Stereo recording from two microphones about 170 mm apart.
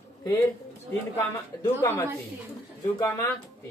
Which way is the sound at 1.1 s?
15° left (ahead or behind).